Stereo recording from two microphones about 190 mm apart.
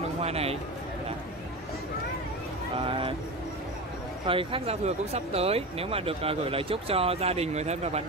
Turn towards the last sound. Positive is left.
turn(degrees=-35)  # may be behind; listen again after turning